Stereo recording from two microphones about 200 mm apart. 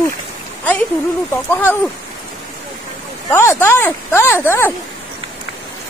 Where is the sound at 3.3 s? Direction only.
10° left (ahead or behind).